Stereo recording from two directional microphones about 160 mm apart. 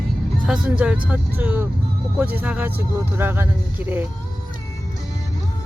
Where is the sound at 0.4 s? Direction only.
5° right (ahead or behind).